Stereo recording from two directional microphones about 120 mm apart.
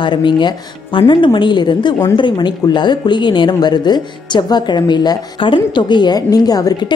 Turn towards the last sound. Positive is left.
turn(degrees=30)  # may be behind; listen again after turning